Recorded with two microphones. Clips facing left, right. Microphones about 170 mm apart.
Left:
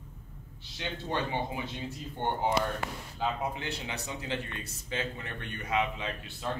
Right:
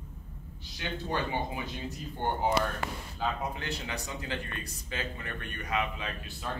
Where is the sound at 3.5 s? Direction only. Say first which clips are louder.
Even; 20° left (ahead or behind).